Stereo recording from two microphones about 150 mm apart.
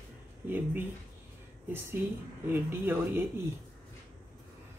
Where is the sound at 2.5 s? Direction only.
15° right (ahead or behind).